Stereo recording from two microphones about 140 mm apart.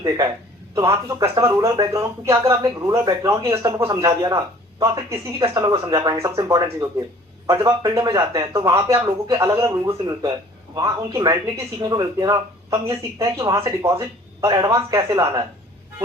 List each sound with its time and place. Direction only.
0.8 s speech: 20° right (ahead or behind)